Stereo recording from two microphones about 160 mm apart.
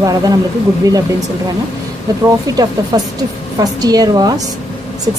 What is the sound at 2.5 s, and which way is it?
Speech, 20° right (ahead or behind).